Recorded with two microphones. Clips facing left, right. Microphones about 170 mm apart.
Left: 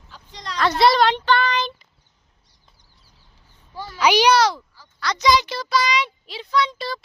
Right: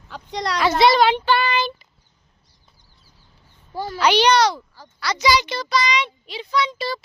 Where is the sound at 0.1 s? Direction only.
75° right (ahead or behind).